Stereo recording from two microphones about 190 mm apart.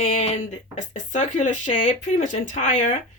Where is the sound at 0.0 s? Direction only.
35° left (ahead or behind).